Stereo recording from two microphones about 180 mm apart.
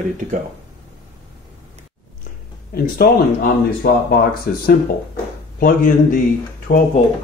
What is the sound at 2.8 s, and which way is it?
Speech, 55° left (ahead or behind).